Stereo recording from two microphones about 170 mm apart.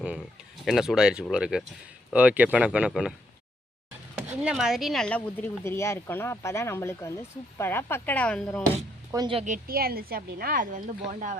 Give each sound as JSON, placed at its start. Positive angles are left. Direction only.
{"t": 0.0, "sound": "a sound", "side_deg": 0}
{"t": 1.3, "sound": "speech", "side_deg": -5}
{"t": 4.3, "sound": "speech", "side_deg": -5}
{"t": 9.1, "sound": "speech", "side_deg": -25}
{"t": 9.4, "sound": "speech", "side_deg": -55}